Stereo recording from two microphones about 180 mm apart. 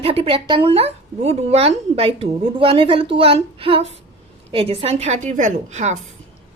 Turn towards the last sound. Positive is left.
turn(degrees=-40)  # may be behind; listen again after turning